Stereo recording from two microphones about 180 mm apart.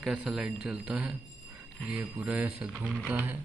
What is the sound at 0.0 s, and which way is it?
A man's voice, 5° right (ahead or behind).